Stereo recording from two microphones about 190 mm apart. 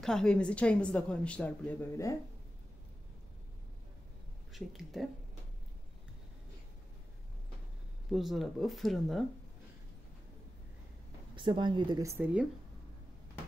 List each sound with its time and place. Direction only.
0.0 s a woman's voice: 5° left (ahead or behind)
4.5 s a woman's voice: centre (ahead or behind)
8.1 s a woman's voice: centre (ahead or behind)
11.3 s a woman's voice: 25° right (ahead or behind)